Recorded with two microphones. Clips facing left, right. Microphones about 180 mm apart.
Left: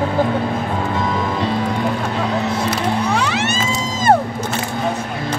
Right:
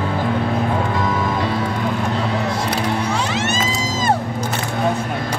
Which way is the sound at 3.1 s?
65° left (ahead or behind).